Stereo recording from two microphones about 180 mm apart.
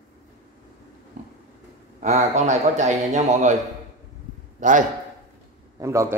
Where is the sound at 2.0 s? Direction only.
40° right (ahead or behind).